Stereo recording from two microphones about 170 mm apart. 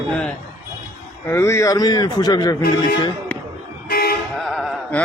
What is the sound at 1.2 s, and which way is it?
A man's voice, 15° left (ahead or behind).